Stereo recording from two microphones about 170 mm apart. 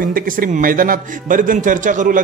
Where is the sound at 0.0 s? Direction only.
55° right (ahead or behind).